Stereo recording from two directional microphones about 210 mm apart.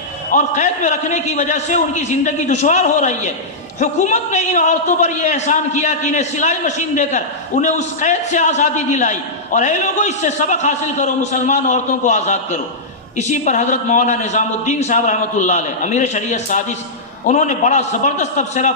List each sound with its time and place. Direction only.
0.3 s a man's voice: 35° left (ahead or behind)